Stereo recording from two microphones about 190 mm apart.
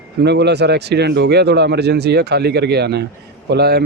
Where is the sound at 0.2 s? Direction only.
60° right (ahead or behind).